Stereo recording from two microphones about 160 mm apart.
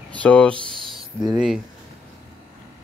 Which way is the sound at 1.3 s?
5° right (ahead or behind).